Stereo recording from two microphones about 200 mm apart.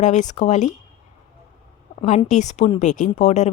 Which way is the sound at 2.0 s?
35° left (ahead or behind).